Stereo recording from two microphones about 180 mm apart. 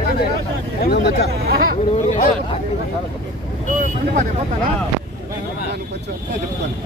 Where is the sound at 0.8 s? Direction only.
60° left (ahead or behind).